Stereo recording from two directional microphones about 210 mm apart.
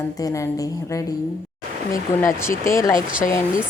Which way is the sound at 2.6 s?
15° left (ahead or behind).